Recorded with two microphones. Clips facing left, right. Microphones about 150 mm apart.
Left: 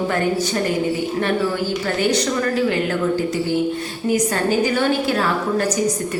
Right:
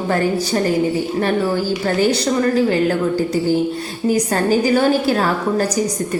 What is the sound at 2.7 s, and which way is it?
A woman's voice, 35° right (ahead or behind).